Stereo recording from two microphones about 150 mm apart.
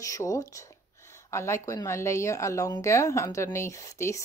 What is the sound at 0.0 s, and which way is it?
Speech, 20° left (ahead or behind).